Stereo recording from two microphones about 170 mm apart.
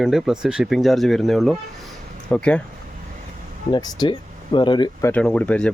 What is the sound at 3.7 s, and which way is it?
Speech, 25° left (ahead or behind).